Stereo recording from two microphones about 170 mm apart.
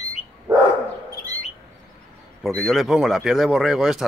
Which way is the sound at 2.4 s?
Centre (ahead or behind).